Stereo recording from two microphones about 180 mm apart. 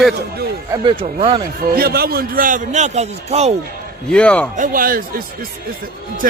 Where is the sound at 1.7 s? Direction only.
60° right (ahead or behind); by 3.5 s 35° right (ahead or behind).